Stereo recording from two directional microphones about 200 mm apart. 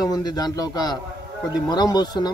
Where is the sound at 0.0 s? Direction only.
20° left (ahead or behind).